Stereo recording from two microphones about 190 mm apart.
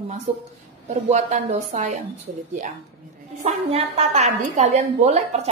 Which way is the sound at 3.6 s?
30° right (ahead or behind).